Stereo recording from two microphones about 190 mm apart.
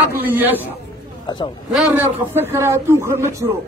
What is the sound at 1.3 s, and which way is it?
Speech, 25° left (ahead or behind).